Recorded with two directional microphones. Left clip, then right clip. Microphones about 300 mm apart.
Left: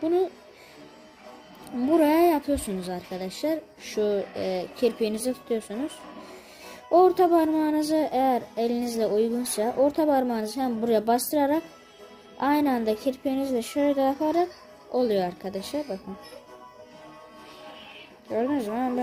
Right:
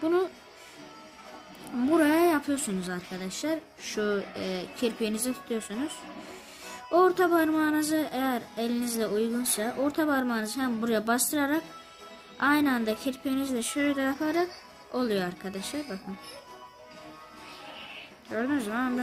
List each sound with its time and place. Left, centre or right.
0.0 s music: centre
2.0 s a woman's voice: centre
7.0 s a woman's voice: centre
18.3 s speech: centre